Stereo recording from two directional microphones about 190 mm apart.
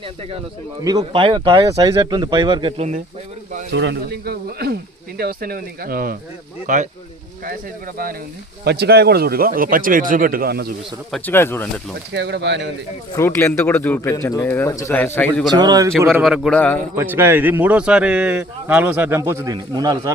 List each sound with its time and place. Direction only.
0.9 s speech: 25° right (ahead or behind)
3.7 s speech: 65° right (ahead or behind); by 6.8 s 45° right (ahead or behind)
8.6 s speech: 55° right (ahead or behind)
11.1 s a man's voice: 10° left (ahead or behind)
12.1 s speech: 65° right (ahead or behind)
13.1 s a man's voice: 15° left (ahead or behind)
15.4 s speech: 20° right (ahead or behind)
16.1 s a man's voice: 5° right (ahead or behind)
16.9 s speech: 10° right (ahead or behind)